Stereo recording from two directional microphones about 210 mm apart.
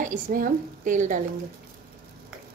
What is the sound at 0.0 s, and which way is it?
A woman's voice, 40° right (ahead or behind).